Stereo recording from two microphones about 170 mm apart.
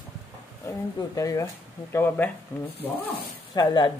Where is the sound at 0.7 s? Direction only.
20° left (ahead or behind).